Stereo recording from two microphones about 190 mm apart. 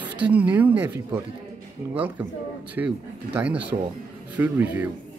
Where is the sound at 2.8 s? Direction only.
10° right (ahead or behind).